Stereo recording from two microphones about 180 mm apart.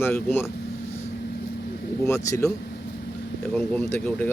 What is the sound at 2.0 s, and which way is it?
Speech, 15° left (ahead or behind).